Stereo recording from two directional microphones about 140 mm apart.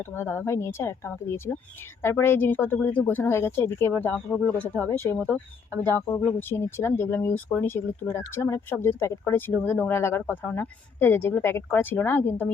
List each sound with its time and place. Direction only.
0.0 s speech: 15° left (ahead or behind)
5.7 s speech: 25° right (ahead or behind)
6.1 s speech: 15° left (ahead or behind)